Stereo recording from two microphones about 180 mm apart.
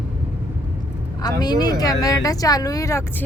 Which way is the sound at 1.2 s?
20° left (ahead or behind).